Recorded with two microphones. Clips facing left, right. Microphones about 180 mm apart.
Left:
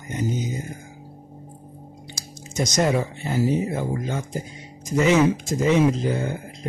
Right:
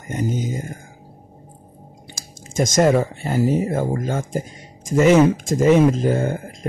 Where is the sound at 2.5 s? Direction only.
50° right (ahead or behind).